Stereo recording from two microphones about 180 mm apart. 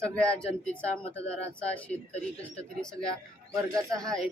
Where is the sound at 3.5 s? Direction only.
20° right (ahead or behind).